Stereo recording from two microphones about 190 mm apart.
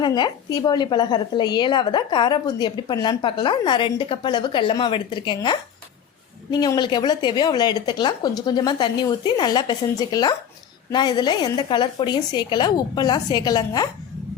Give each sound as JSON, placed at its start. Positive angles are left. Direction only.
{"t": 0.0, "sound": "a woman's voice", "side_deg": 25}